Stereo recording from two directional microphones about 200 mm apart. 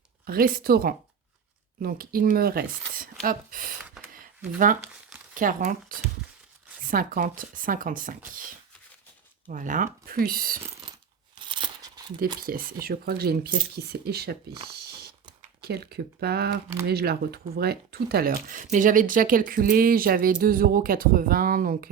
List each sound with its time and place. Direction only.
0.3 s speech: 45° right (ahead or behind)
4.1 s a sound: 40° right (ahead or behind)
5.3 s speech: 40° right (ahead or behind)
9.5 s speech: 40° right (ahead or behind)
11.3 s a sound: 25° right (ahead or behind)
12.2 s speech: 45° right (ahead or behind)
15.4 s speech: 50° right (ahead or behind)